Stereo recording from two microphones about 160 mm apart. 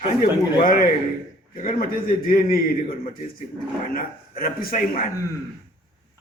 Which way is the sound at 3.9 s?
65° left (ahead or behind).